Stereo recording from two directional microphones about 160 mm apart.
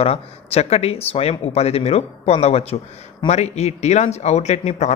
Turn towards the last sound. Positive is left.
turn(degrees=45)  # may be behind; listen again after turning